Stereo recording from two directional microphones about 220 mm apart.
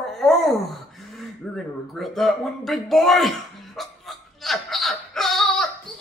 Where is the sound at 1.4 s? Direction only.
5° left (ahead or behind).